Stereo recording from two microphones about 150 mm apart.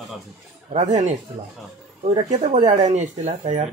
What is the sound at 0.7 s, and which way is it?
Speech, 50° right (ahead or behind).